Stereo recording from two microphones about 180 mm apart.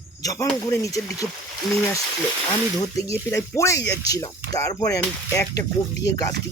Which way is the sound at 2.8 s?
20° left (ahead or behind).